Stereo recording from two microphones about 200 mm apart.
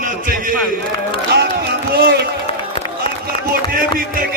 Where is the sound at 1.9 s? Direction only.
50° right (ahead or behind).